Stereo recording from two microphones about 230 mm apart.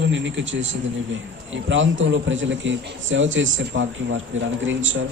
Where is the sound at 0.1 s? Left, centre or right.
Right.